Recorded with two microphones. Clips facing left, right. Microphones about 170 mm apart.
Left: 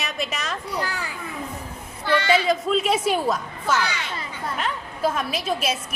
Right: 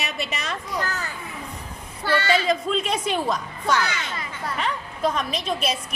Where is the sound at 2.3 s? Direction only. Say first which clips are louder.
Left 3 dB; 5° left (ahead or behind).